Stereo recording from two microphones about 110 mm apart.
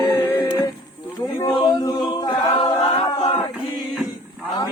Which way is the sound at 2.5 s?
35° left (ahead or behind).